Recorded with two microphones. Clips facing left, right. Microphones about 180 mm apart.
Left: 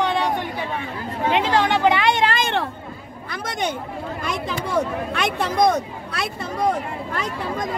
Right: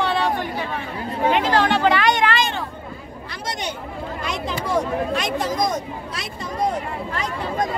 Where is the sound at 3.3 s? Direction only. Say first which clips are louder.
Left 4 dB; 50° left (ahead or behind).